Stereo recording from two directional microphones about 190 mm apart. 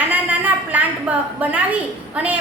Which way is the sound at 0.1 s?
10° right (ahead or behind).